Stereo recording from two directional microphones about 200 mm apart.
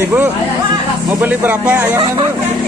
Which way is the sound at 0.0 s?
10° right (ahead or behind).